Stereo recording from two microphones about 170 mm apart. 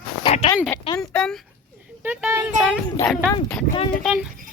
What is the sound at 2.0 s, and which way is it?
Speech, 10° right (ahead or behind).